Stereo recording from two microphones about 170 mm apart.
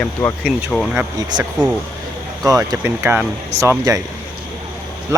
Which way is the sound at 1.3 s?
25° right (ahead or behind).